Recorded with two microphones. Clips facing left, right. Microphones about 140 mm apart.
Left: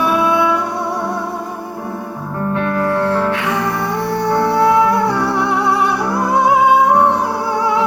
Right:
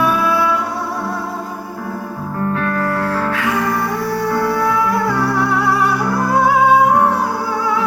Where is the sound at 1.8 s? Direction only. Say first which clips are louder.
Even; 20° left (ahead or behind).